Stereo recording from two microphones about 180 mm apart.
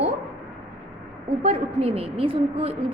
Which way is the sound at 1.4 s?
35° right (ahead or behind).